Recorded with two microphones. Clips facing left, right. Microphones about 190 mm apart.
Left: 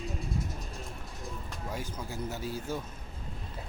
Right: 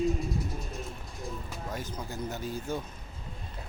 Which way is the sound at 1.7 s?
10° left (ahead or behind).